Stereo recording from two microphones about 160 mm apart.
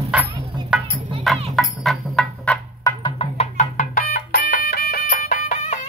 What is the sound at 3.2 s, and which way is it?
Music, 45° left (ahead or behind).